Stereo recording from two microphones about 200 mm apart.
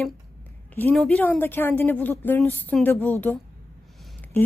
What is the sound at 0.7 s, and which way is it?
A woman's voice, 10° left (ahead or behind).